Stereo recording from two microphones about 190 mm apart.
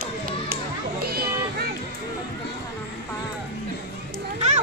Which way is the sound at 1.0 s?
55° right (ahead or behind).